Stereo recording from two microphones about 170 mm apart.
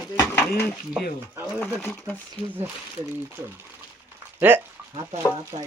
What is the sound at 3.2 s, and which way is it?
Speech, 15° right (ahead or behind).